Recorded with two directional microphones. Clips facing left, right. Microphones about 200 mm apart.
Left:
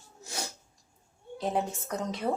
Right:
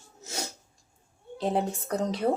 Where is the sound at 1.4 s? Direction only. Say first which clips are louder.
Right 3 dB; 30° right (ahead or behind).